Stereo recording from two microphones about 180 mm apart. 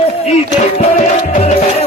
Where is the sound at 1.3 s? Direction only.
40° left (ahead or behind).